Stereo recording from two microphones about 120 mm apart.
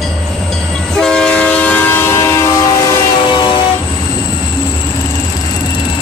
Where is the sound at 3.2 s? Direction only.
40° left (ahead or behind).